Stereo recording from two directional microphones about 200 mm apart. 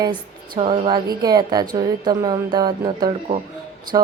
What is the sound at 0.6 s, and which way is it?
Speech, 30° right (ahead or behind).